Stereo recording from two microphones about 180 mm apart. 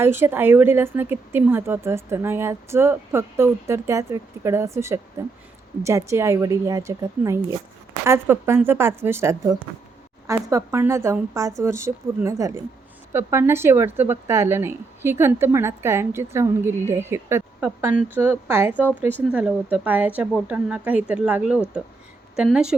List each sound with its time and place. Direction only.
0.0 s a woman's voice: 10° right (ahead or behind)